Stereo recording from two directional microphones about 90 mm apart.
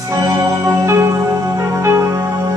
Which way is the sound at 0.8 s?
30° right (ahead or behind).